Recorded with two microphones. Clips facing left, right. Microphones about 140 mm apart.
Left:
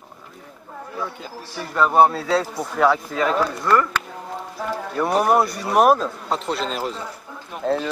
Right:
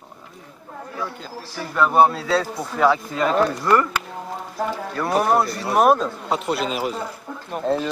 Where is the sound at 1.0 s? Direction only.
Centre (ahead or behind).